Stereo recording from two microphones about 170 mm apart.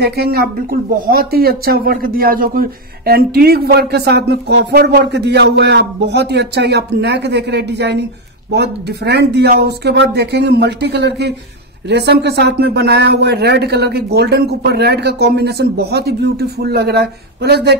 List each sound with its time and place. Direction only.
0.0 s speech: 70° right (ahead or behind)